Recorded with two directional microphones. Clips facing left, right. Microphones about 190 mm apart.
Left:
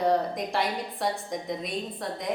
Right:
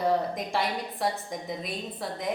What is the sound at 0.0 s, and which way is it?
A woman's voice, centre (ahead or behind).